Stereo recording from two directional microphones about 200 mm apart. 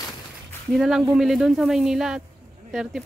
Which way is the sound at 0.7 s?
Centre (ahead or behind).